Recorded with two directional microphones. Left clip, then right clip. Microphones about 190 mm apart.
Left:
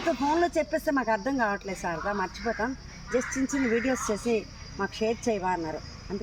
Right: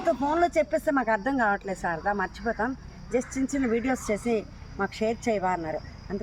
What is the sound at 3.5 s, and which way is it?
Speech, 10° right (ahead or behind).